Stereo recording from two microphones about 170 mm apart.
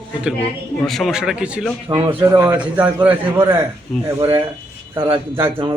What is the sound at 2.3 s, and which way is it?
Speech, 15° right (ahead or behind).